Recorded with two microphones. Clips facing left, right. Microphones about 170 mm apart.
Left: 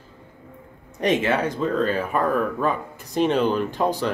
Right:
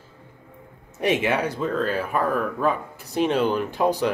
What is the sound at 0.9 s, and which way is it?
Speech, 10° right (ahead or behind).